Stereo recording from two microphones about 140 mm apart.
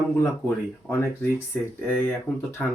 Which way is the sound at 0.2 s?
15° left (ahead or behind).